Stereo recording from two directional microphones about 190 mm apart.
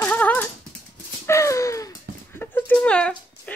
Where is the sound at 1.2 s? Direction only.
15° left (ahead or behind).